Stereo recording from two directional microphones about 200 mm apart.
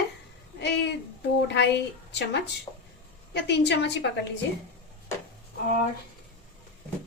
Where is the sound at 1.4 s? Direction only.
60° left (ahead or behind).